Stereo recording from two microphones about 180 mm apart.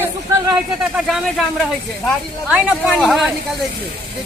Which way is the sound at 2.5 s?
5° right (ahead or behind).